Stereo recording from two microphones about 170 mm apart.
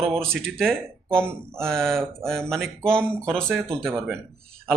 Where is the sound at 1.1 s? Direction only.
5° left (ahead or behind).